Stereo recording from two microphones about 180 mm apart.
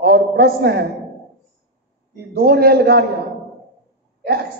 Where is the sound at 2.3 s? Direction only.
60° right (ahead or behind).